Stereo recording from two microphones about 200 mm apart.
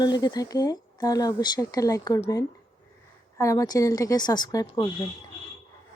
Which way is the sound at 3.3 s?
15° left (ahead or behind).